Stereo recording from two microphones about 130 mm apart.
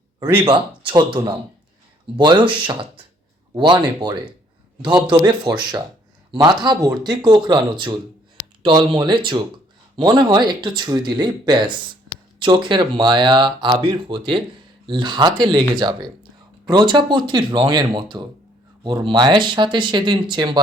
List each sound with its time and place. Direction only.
0.4 s speech: 40° right (ahead or behind)
4.8 s speech: 35° right (ahead or behind)